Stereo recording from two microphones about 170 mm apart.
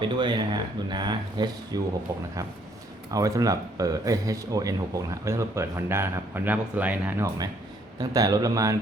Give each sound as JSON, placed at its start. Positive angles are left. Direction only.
{"t": 0.0, "sound": "speech", "side_deg": -25}
{"t": 7.9, "sound": "speech", "side_deg": -20}